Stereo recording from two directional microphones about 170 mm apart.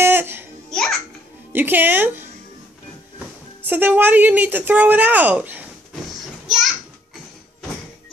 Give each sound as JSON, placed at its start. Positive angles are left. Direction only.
{"t": 0.0, "sound": "music", "side_deg": -10}
{"t": 0.7, "sound": "music", "side_deg": 0}
{"t": 1.5, "sound": "a woman's voice", "side_deg": -10}
{"t": 3.6, "sound": "a woman's voice", "side_deg": -10}
{"t": 6.4, "sound": "a sound", "side_deg": 0}